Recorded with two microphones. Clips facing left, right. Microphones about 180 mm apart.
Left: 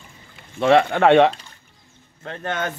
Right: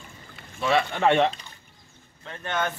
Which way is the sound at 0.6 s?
70° left (ahead or behind).